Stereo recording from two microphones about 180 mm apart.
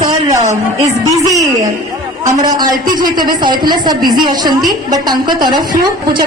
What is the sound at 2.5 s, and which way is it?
A woman's voice, 20° right (ahead or behind).